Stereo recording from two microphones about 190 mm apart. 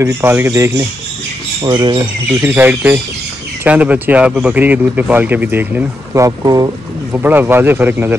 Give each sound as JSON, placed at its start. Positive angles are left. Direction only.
{"t": 0.0, "sound": "speech", "side_deg": -10}
{"t": 1.6, "sound": "speech", "side_deg": -25}
{"t": 2.4, "sound": "speech", "side_deg": -10}